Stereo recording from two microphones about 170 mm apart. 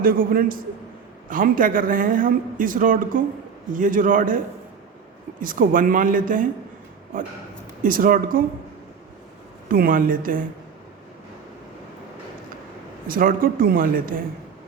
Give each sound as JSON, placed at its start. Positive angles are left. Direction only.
{"t": 0.0, "sound": "speech", "side_deg": -55}
{"t": 5.4, "sound": "speech", "side_deg": -55}
{"t": 7.8, "sound": "speech", "side_deg": -55}
{"t": 9.6, "sound": "speech", "side_deg": -55}
{"t": 13.1, "sound": "speech", "side_deg": -55}